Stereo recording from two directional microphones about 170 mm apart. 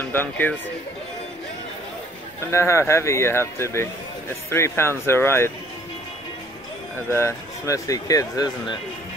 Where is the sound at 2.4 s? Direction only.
15° left (ahead or behind).